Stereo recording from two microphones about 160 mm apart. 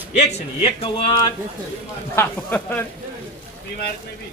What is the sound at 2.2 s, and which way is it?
Speech, 10° left (ahead or behind).